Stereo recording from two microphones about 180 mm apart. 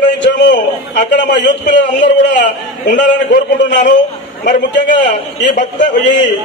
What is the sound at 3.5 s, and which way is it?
Speech, 75° left (ahead or behind).